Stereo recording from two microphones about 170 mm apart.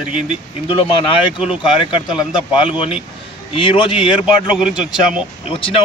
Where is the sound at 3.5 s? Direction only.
30° left (ahead or behind).